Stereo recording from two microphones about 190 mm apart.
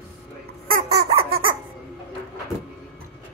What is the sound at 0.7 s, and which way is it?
Baby laughter, 35° right (ahead or behind).